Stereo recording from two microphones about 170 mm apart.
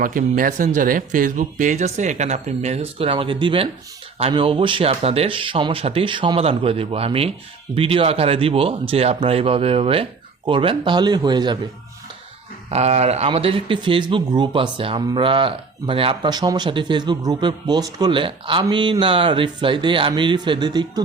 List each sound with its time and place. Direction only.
0.0 s speech: 50° right (ahead or behind); by 11.5 s 25° right (ahead or behind)
12.7 s speech: 40° right (ahead or behind)